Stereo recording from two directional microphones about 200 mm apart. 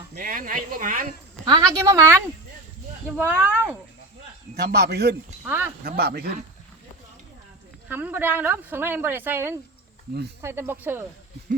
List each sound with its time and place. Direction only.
0.1 s speech: 45° right (ahead or behind)
1.5 s speech: 20° right (ahead or behind)
3.2 s speech: 5° right (ahead or behind)
4.5 s speech: 50° right (ahead or behind)
5.5 s speech: 10° right (ahead or behind)
5.8 s speech: 50° right (ahead or behind)
7.9 s speech: 10° right (ahead or behind)